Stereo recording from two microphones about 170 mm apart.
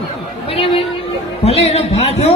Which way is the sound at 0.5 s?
30° left (ahead or behind).